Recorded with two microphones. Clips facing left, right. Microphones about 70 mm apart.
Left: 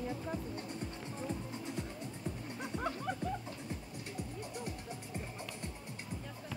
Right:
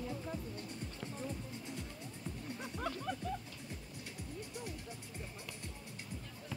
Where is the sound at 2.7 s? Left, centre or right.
Centre.